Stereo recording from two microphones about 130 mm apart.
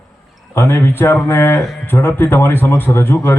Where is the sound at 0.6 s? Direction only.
20° left (ahead or behind).